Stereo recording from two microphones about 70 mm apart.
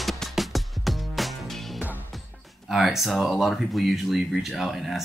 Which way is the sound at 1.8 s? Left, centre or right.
Right.